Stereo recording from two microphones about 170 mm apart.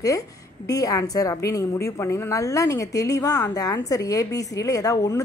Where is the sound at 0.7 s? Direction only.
20° left (ahead or behind).